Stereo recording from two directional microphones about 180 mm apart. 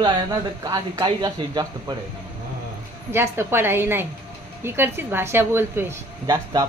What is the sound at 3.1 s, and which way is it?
A woman's voice, 15° right (ahead or behind).